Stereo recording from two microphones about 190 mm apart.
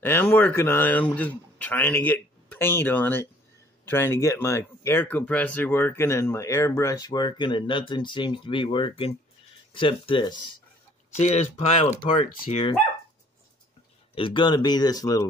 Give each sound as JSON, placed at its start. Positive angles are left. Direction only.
{"t": 0.0, "sound": "speech", "side_deg": 10}
{"t": 11.1, "sound": "speech", "side_deg": 35}
{"t": 14.1, "sound": "speech", "side_deg": 25}